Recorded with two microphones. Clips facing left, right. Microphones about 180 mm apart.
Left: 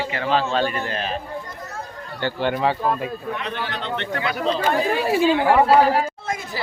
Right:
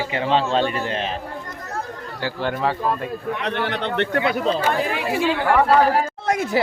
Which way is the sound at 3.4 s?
65° right (ahead or behind).